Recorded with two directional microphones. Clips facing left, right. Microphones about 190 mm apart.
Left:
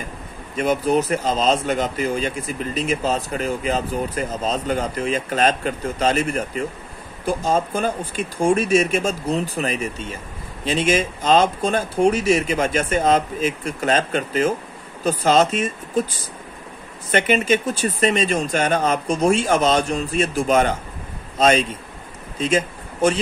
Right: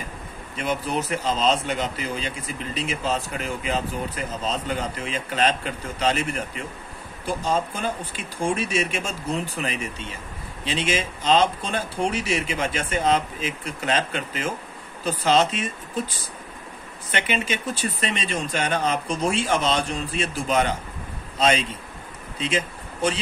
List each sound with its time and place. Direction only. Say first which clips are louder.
0.6 s speech: left 7 dB; 45° left (ahead or behind)
17.1 s speech: left 8 dB; 45° left (ahead or behind)